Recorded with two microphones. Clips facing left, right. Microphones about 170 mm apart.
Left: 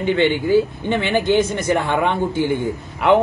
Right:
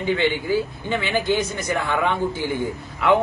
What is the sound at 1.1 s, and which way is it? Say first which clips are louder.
Speech: left 5 dB; 25° left (ahead or behind).